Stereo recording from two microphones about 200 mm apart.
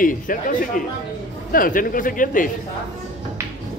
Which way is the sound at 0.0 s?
40° left (ahead or behind).